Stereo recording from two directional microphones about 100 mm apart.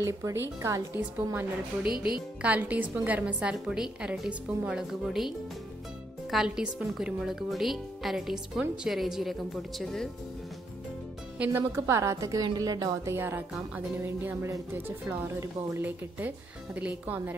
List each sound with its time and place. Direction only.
0.0 s speech: 25° right (ahead or behind)
0.9 s speech: 20° right (ahead or behind)
1.9 s speech: 50° left (ahead or behind)
2.4 s a woman's voice: 15° right (ahead or behind)
6.3 s a woman's voice: 5° right (ahead or behind)
11.5 s a woman's voice: 30° right (ahead or behind)
13.1 s a woman's voice: 25° right (ahead or behind)